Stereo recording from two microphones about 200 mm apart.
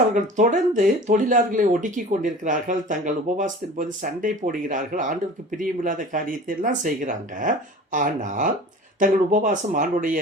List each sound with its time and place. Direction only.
0.1 s speech: 40° right (ahead or behind)